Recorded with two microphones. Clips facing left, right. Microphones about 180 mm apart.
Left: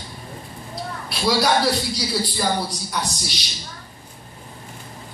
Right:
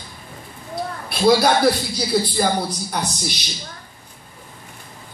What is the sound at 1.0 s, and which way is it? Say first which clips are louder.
Speech: right 5 dB; 55° right (ahead or behind).